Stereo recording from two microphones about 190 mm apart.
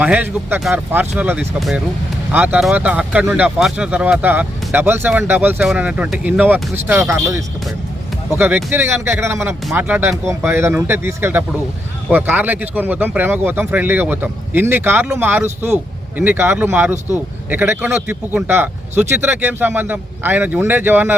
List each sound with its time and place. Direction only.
0.0 s speech: 10° right (ahead or behind)